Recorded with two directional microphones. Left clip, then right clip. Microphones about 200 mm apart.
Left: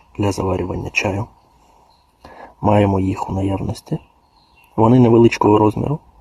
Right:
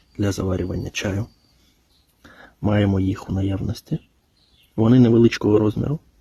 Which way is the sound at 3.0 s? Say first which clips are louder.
Left 5 dB; 10° right (ahead or behind).